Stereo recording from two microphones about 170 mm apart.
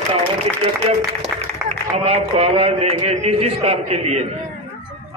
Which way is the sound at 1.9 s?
35° right (ahead or behind).